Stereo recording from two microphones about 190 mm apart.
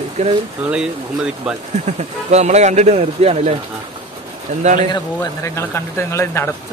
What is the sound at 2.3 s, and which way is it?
Speech, 35° right (ahead or behind).